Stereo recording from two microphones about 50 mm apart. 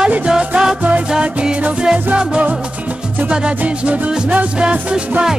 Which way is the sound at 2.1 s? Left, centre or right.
Right.